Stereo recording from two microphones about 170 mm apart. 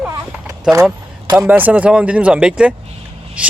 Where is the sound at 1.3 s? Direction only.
10° right (ahead or behind).